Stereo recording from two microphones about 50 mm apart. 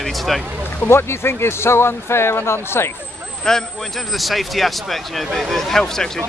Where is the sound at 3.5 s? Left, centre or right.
Centre.